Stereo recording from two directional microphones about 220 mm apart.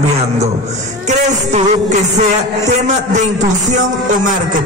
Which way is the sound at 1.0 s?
35° right (ahead or behind).